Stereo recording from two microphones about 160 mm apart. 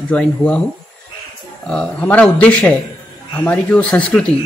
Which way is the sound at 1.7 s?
10° left (ahead or behind).